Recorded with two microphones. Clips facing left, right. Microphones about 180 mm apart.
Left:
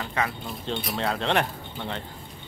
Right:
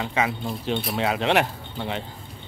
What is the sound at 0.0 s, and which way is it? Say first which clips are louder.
Speech: right 4 dB; 15° right (ahead or behind).